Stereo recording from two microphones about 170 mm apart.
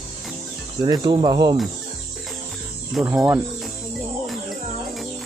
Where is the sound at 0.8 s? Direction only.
25° right (ahead or behind).